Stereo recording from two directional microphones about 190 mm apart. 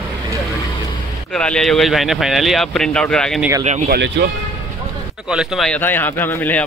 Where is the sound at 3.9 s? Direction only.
60° right (ahead or behind).